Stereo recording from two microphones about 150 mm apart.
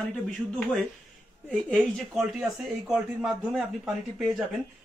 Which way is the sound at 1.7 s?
Centre (ahead or behind).